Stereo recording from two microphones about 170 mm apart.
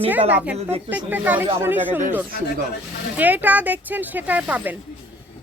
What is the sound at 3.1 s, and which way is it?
Speech, 10° right (ahead or behind).